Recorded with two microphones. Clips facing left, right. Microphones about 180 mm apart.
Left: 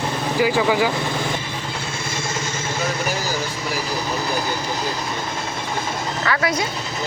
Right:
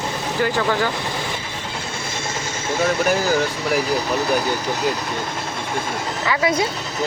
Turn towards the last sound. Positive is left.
turn(degrees=-15)  # may be behind; listen again after turning